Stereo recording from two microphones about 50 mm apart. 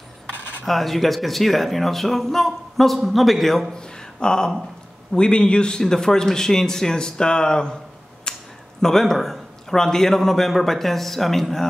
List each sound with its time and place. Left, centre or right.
0.7 s a man's voice: centre
3.7 s a sound: centre
5.1 s a man's voice: centre